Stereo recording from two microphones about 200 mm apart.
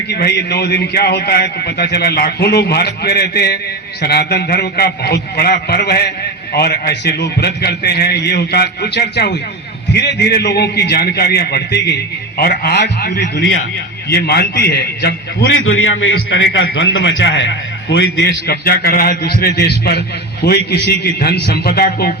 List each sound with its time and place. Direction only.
0.1 s a man's voice: 55° left (ahead or behind)
15.4 s a man's voice: 75° left (ahead or behind); by 22.1 s 50° left (ahead or behind)